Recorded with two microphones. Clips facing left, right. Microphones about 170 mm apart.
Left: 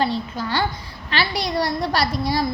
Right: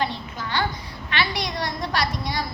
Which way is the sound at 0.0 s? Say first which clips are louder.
Left 5 dB; 35° left (ahead or behind).